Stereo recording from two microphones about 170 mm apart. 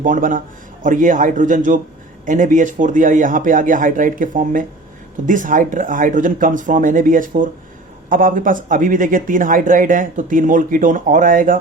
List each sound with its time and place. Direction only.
0.0 s speech: 50° right (ahead or behind)